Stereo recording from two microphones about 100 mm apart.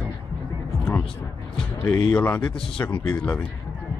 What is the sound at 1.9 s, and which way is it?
Speech, 15° left (ahead or behind).